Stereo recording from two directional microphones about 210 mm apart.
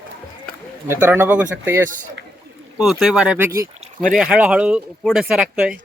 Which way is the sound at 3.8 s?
40° right (ahead or behind).